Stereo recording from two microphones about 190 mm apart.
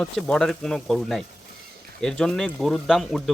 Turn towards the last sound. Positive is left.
turn(degrees=0)  # may be behind; listen again after turning